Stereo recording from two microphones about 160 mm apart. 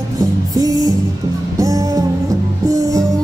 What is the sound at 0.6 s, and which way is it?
Music, 20° right (ahead or behind).